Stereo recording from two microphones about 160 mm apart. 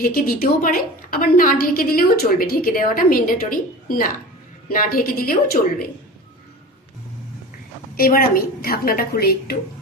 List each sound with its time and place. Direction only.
0.0 s a woman's voice: 65° left (ahead or behind)
7.9 s a woman's voice: 65° left (ahead or behind)